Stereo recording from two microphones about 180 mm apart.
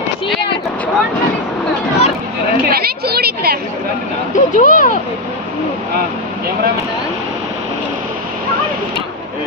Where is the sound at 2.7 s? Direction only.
60° right (ahead or behind).